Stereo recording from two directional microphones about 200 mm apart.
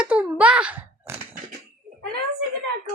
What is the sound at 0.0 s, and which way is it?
Sigh, 5° right (ahead or behind).